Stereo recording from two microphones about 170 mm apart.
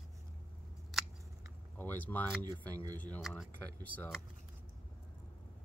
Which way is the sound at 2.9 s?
10° left (ahead or behind).